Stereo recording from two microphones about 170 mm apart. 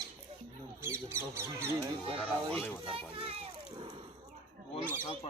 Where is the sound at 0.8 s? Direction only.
15° right (ahead or behind).